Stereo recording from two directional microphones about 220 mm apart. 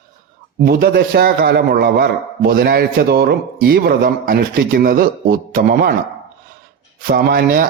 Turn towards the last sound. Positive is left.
turn(degrees=-40)  # may be behind; listen again after turning